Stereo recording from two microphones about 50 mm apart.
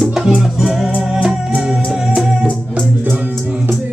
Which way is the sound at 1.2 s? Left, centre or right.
Right.